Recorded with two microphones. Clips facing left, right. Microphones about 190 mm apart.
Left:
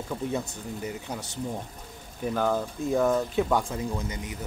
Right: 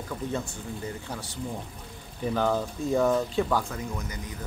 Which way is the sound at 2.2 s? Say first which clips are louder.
Even; 5° left (ahead or behind).